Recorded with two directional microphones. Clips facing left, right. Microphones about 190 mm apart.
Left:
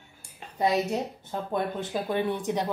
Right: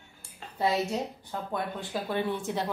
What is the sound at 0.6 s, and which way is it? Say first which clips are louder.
A woman's voice: left 2 dB; 15° left (ahead or behind).